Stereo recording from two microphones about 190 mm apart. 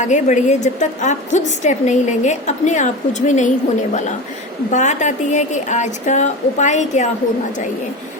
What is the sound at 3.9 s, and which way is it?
A woman's voice, 40° left (ahead or behind).